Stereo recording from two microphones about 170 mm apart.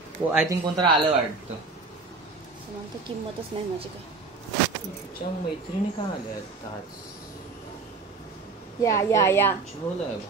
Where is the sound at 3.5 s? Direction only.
30° right (ahead or behind).